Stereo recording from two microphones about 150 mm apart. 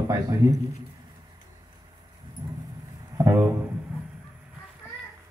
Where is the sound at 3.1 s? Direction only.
15° right (ahead or behind).